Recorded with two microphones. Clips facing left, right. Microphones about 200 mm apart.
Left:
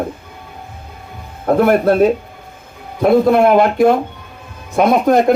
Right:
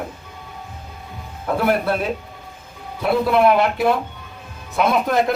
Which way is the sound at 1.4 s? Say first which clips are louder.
Left 8 dB; 50° left (ahead or behind).